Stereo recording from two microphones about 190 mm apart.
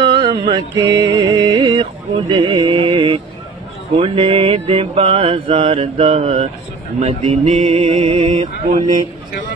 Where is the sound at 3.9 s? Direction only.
30° right (ahead or behind).